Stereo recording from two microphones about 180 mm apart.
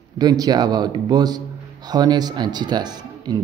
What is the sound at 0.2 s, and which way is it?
Speech, 20° right (ahead or behind).